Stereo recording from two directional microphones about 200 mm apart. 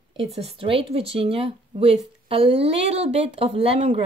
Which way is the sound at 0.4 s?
30° right (ahead or behind).